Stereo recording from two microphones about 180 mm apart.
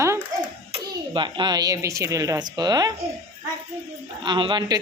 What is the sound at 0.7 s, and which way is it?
A child's voice, 25° right (ahead or behind).